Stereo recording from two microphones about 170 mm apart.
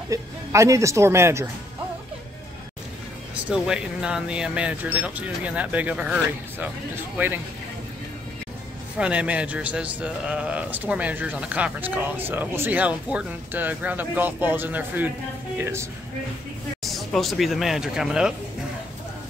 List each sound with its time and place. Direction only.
0.1 s speech: 20° right (ahead or behind)
3.4 s a man's voice: 5° right (ahead or behind)
8.9 s a man's voice: 5° right (ahead or behind)
16.8 s speech: centre (ahead or behind)